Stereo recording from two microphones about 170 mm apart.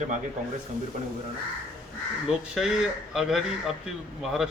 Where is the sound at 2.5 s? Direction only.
Centre (ahead or behind).